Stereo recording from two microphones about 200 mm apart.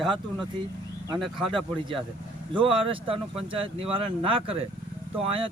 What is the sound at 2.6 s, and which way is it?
Speech, 25° right (ahead or behind).